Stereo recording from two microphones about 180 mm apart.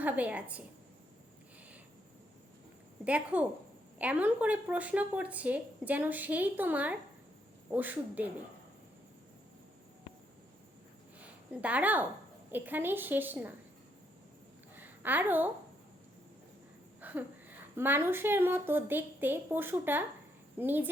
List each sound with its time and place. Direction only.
0.0 s a woman's voice: 10° right (ahead or behind)
3.0 s a woman's voice: 5° right (ahead or behind)
11.2 s a woman's voice: 10° right (ahead or behind)
14.8 s a sound: 10° right (ahead or behind)
17.0 s a woman's voice: 10° right (ahead or behind)